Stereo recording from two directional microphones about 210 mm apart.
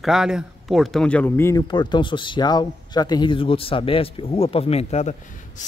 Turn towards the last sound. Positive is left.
turn(degrees=30)  # may be behind; listen again after turning